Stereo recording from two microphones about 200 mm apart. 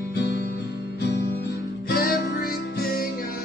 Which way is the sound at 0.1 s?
55° left (ahead or behind).